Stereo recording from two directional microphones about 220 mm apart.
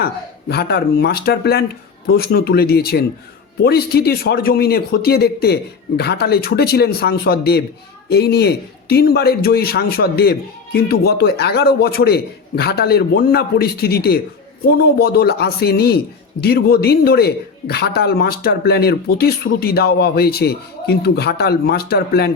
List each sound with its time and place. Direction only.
0.0 s speech: 45° left (ahead or behind)